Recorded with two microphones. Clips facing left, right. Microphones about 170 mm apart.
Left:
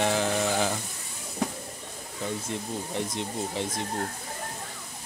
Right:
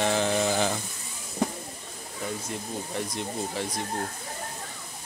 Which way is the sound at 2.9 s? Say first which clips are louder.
Even; 20° left (ahead or behind).